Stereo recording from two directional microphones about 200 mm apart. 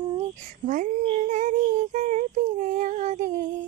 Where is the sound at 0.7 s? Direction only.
40° right (ahead or behind).